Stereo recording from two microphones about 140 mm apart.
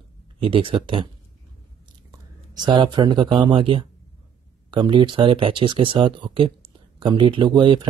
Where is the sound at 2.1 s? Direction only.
30° right (ahead or behind).